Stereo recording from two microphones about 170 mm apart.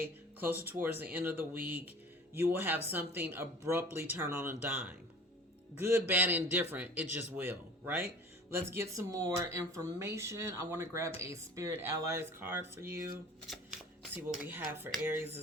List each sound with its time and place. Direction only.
0.0 s music: 10° right (ahead or behind)
0.6 s speech: 10° right (ahead or behind)
14.4 s speech: 10° right (ahead or behind)